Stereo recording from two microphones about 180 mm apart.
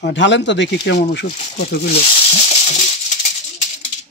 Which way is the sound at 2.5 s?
35° left (ahead or behind).